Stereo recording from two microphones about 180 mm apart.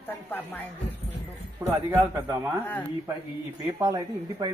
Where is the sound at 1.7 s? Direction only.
20° right (ahead or behind).